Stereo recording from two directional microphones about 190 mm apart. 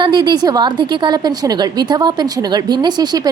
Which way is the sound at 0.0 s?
20° right (ahead or behind).